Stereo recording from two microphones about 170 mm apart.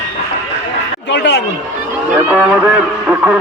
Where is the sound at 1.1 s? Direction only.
90° left.